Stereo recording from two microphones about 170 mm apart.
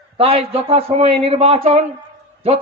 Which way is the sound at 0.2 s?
35° right (ahead or behind).